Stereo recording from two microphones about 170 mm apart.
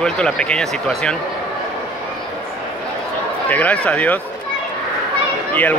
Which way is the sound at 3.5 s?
10° left (ahead or behind).